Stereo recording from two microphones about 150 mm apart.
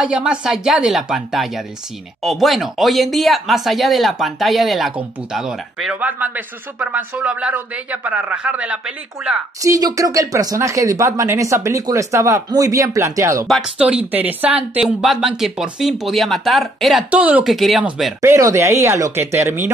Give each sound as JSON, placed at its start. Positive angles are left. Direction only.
{"t": 0.0, "sound": "speech", "side_deg": -5}
{"t": 9.6, "sound": "speech", "side_deg": -25}
{"t": 13.5, "sound": "speech", "side_deg": -5}
{"t": 18.2, "sound": "speech", "side_deg": -20}